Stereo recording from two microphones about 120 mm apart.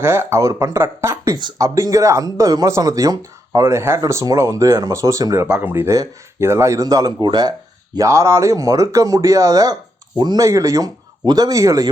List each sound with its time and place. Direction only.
0.0 s speech: 20° right (ahead or behind)
1.4 s speech: 35° right (ahead or behind)
5.5 s speech: 15° right (ahead or behind); by 7.5 s 35° right (ahead or behind)
7.9 s speech: 25° right (ahead or behind)